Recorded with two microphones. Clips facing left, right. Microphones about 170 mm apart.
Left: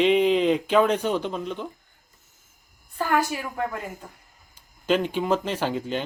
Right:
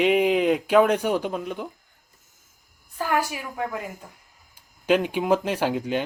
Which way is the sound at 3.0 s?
10° right (ahead or behind).